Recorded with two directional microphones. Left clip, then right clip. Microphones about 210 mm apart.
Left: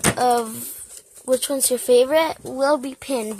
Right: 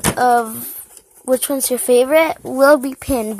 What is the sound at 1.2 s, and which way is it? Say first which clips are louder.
Speech: right 3 dB; 15° right (ahead or behind).